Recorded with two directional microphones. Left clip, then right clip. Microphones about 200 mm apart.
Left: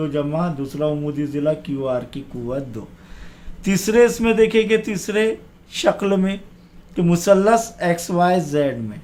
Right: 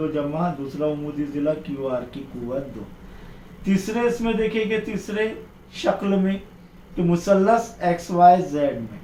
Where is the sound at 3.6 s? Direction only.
60° left (ahead or behind).